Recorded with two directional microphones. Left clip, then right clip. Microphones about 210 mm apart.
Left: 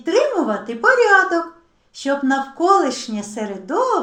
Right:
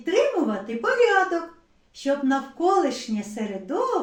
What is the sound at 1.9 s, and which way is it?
Speech, 30° left (ahead or behind).